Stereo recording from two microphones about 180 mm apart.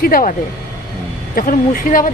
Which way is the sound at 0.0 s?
50° left (ahead or behind).